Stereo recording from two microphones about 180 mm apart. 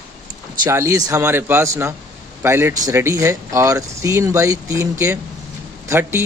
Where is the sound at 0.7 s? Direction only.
15° right (ahead or behind).